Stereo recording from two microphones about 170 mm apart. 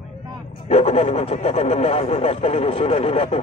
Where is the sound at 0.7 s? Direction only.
35° left (ahead or behind).